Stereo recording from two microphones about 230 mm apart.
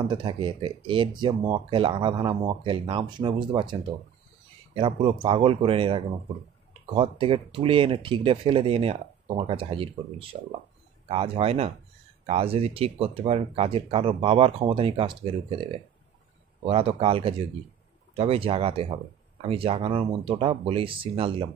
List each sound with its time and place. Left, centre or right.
0.1 s speech: right
4.7 s speech: right
16.6 s speech: right